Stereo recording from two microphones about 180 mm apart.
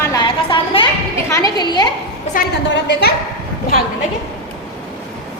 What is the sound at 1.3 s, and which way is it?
Speech, 20° left (ahead or behind).